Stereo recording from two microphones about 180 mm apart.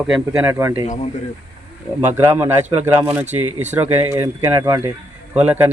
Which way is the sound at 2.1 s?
10° right (ahead or behind).